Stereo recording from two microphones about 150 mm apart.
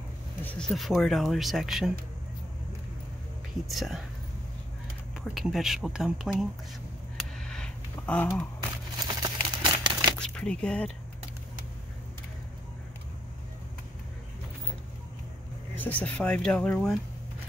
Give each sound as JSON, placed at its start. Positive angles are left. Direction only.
{"t": 0.4, "sound": "speech", "side_deg": 10}
{"t": 3.6, "sound": "speech", "side_deg": 0}
{"t": 5.2, "sound": "speech", "side_deg": 0}
{"t": 7.2, "sound": "a sound", "side_deg": 5}
{"t": 9.0, "sound": "a sound", "side_deg": -30}
{"t": 10.1, "sound": "shuffling cards", "side_deg": 5}
{"t": 15.8, "sound": "speech", "side_deg": 10}